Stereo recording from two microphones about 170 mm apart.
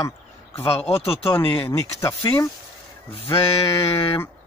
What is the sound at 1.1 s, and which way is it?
Speech, 15° left (ahead or behind).